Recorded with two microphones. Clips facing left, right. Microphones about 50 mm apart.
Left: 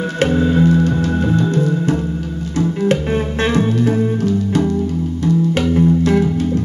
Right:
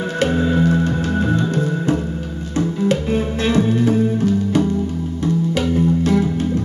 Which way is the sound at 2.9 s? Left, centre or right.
Left.